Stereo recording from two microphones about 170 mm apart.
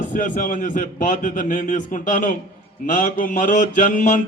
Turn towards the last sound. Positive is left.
turn(degrees=50)  # may be behind; listen again after turning